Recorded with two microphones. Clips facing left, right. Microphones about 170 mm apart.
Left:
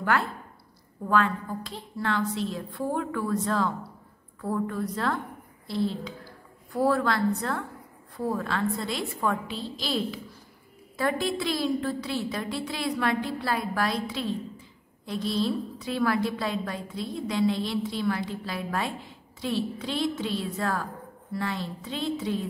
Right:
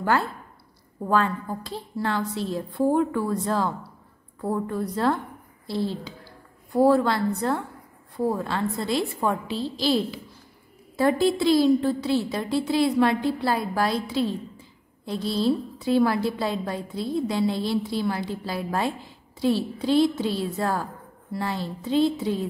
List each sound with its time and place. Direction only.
1.0 s a woman's voice: 35° right (ahead or behind)